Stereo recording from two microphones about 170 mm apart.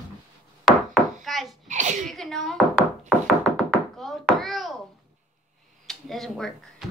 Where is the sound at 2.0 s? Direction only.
Centre (ahead or behind).